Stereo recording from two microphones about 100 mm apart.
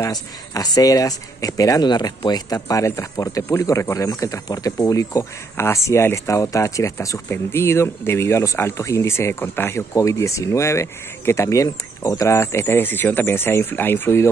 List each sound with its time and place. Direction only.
0.0 s speech: 40° left (ahead or behind); by 14.3 s 25° left (ahead or behind)